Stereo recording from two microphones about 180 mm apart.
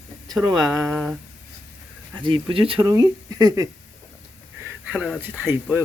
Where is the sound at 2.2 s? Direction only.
25° right (ahead or behind).